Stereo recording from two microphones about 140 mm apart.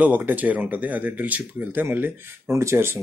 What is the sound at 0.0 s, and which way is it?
Speech, 10° right (ahead or behind).